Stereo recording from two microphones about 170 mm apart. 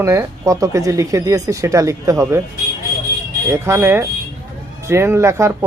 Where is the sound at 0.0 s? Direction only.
15° right (ahead or behind).